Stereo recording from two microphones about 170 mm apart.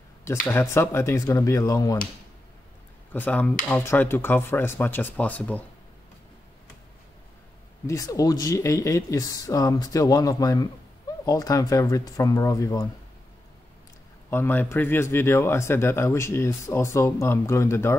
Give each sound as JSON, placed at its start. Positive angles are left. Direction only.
{"t": 0.5, "sound": "speech", "side_deg": 15}
{"t": 3.1, "sound": "speech", "side_deg": 10}
{"t": 7.8, "sound": "speech", "side_deg": 20}
{"t": 14.3, "sound": "speech", "side_deg": 10}